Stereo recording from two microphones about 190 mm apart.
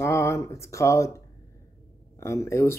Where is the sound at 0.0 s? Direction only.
15° left (ahead or behind).